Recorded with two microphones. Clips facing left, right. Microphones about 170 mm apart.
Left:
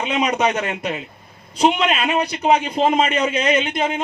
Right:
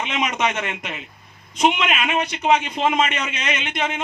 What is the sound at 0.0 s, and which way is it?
A man's voice, 35° left (ahead or behind).